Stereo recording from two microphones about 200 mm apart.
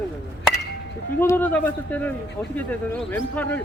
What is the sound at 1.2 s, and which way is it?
Speech, 10° left (ahead or behind).